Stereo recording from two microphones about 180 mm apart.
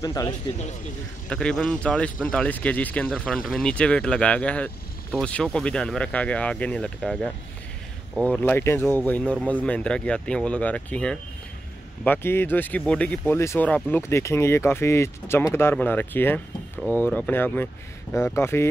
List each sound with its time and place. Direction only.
0.0 s speech: 20° left (ahead or behind)
1.3 s speech: 5° left (ahead or behind)
16.7 s speech: 10° right (ahead or behind)
17.3 s speech: 10° left (ahead or behind)